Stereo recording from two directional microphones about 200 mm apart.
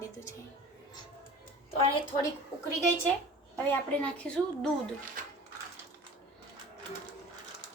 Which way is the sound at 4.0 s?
5° left (ahead or behind).